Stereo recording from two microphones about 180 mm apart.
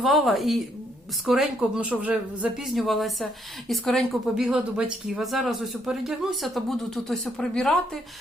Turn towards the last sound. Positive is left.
turn(degrees=5)  # may be behind; listen again after turning